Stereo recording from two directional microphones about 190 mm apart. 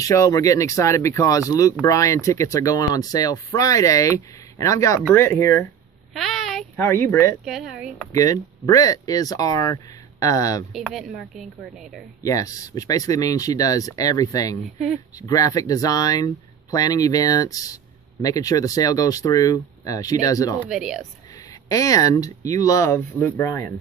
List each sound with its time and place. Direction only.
0.0 s speech: 15° left (ahead or behind)
6.1 s a sound: centre (ahead or behind)
6.8 s speech: 15° left (ahead or behind)
7.4 s speech: centre (ahead or behind)
8.1 s speech: 15° left (ahead or behind)
10.7 s speech: centre (ahead or behind)
12.2 s speech: 15° left (ahead or behind)
20.6 s speech: 5° right (ahead or behind)
21.6 s speech: 20° left (ahead or behind)